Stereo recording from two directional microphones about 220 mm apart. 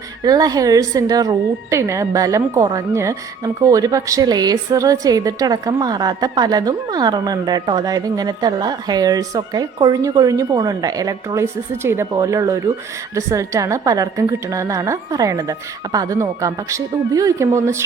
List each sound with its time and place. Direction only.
0.3 s speech: 15° right (ahead or behind)